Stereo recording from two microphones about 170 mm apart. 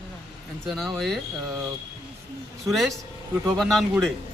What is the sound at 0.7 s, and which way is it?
Speech, centre (ahead or behind).